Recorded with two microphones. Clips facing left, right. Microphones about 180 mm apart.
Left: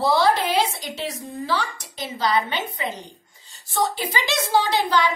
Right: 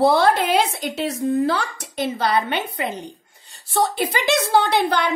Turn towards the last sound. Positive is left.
turn(degrees=-60)  # may be behind; listen again after turning